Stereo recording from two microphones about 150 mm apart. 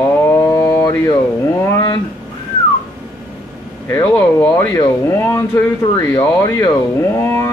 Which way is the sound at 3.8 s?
15° left (ahead or behind).